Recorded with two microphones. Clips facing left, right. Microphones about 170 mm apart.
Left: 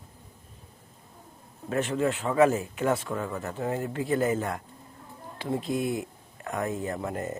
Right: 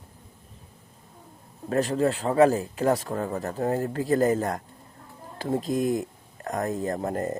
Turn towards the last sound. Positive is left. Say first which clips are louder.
# right 4 dB
turn(degrees=-40)  # may be behind; listen again after turning